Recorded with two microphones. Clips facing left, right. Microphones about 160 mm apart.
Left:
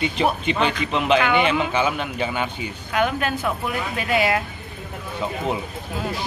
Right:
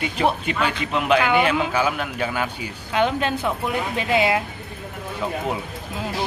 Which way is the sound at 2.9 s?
25° right (ahead or behind).